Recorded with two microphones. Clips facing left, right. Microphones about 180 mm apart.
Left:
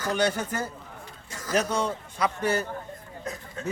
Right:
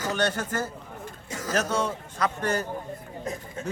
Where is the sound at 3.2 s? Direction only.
20° right (ahead or behind).